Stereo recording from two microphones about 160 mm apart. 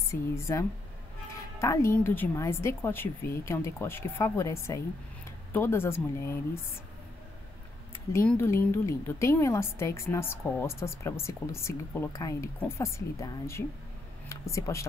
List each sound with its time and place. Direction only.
0.1 s a woman's voice: 20° left (ahead or behind)
8.1 s a woman's voice: 15° left (ahead or behind)